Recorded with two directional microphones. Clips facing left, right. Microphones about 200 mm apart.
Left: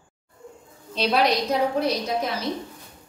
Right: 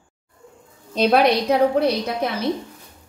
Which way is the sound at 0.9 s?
55° right (ahead or behind).